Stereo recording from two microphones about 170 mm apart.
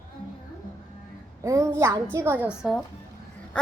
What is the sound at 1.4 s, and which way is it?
A child's voice, 15° right (ahead or behind).